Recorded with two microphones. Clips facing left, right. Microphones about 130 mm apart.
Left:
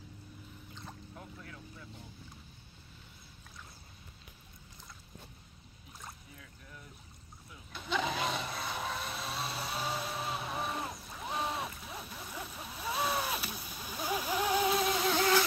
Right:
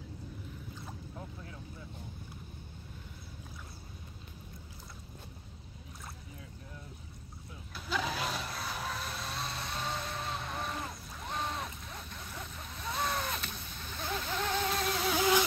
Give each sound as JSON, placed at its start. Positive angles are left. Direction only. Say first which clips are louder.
{"t": 1.1, "sound": "boat", "louder": "right 2 dB", "side_deg": -25}
{"t": 7.7, "sound": "vehicle", "louder": "left 1 dB", "side_deg": 0}